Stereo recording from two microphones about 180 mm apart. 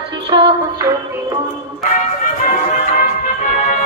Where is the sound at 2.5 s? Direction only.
45° left (ahead or behind).